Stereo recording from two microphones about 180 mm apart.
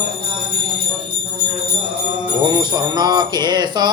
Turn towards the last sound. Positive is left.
turn(degrees=-25)  # may be behind; listen again after turning